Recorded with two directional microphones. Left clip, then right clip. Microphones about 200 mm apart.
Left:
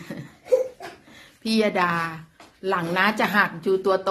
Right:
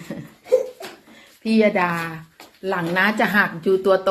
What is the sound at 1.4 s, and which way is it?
A woman's voice, 10° left (ahead or behind).